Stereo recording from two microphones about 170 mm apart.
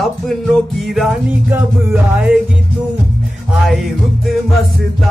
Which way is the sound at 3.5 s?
Centre (ahead or behind).